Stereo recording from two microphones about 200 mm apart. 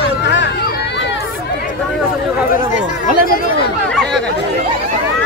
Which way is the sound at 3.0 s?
45° left (ahead or behind).